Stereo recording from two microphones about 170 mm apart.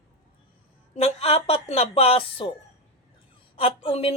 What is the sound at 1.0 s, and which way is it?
A woman's voice, 40° left (ahead or behind).